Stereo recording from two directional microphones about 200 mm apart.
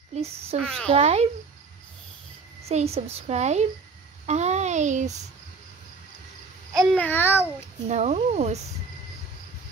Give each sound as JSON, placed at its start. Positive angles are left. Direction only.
{"t": 0.1, "sound": "a child's voice", "side_deg": -30}
{"t": 0.6, "sound": "a child's voice", "side_deg": 5}
{"t": 0.9, "sound": "a child's voice", "side_deg": -30}
{"t": 2.6, "sound": "a child's voice", "side_deg": -30}
{"t": 6.9, "sound": "babbling", "side_deg": 10}
{"t": 7.9, "sound": "a child's voice", "side_deg": -35}